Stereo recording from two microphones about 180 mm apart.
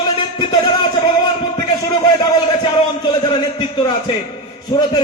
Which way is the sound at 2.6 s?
25° left (ahead or behind).